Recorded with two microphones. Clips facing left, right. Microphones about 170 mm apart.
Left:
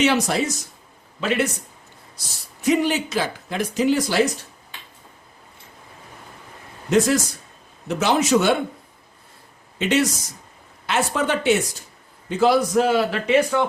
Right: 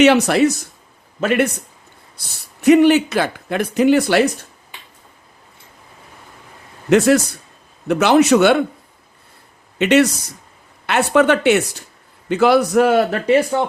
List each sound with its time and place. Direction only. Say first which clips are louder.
0.0 s speech: right 8 dB; 70° right (ahead or behind)
6.9 s speech: right 6 dB; 70° right (ahead or behind)
9.7 s speech: right 7 dB; 70° right (ahead or behind); by 13.3 s 50° right (ahead or behind)
13.5 s speech: right 2 dB; 35° right (ahead or behind)